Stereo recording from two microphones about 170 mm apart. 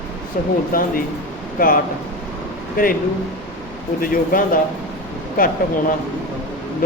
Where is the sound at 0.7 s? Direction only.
55° left (ahead or behind).